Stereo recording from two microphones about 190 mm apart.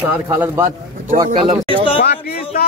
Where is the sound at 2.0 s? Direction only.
55° left (ahead or behind).